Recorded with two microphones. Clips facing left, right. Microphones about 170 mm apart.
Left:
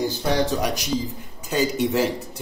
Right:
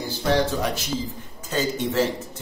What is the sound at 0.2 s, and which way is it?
Speech, 15° left (ahead or behind).